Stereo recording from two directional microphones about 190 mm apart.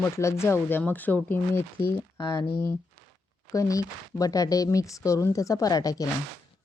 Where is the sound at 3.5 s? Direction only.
15° left (ahead or behind).